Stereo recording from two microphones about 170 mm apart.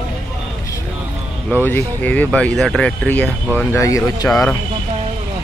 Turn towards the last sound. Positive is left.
turn(degrees=0)  # may be behind; listen again after turning